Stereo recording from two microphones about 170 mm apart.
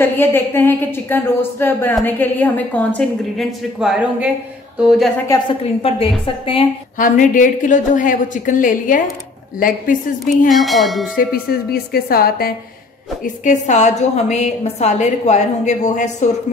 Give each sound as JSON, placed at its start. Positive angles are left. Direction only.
{"t": 0.0, "sound": "a woman's voice", "side_deg": 10}
{"t": 5.3, "sound": "a woman's voice", "side_deg": 30}
{"t": 7.0, "sound": "a woman's voice", "side_deg": 50}
{"t": 10.5, "sound": "speech", "side_deg": 0}
{"t": 11.7, "sound": "a woman's voice", "side_deg": 65}
{"t": 13.2, "sound": "a woman's voice", "side_deg": 50}